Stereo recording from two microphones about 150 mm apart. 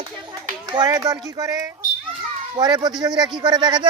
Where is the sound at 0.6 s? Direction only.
25° right (ahead or behind).